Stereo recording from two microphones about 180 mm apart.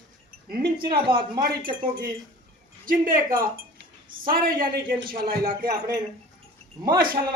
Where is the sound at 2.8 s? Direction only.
50° right (ahead or behind).